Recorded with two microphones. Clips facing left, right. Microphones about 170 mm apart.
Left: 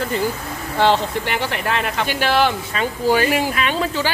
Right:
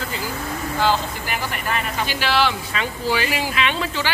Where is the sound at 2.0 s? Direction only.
50° left (ahead or behind).